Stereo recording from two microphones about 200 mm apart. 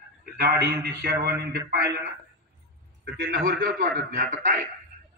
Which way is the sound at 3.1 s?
50° right (ahead or behind).